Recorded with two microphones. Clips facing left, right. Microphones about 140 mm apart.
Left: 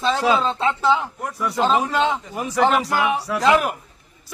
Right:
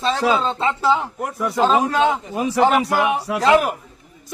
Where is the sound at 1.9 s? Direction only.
15° right (ahead or behind).